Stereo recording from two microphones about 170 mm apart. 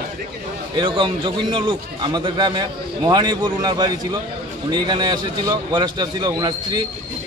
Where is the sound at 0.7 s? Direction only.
30° right (ahead or behind).